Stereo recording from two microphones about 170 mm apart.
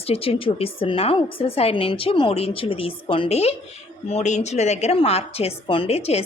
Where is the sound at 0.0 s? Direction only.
35° left (ahead or behind).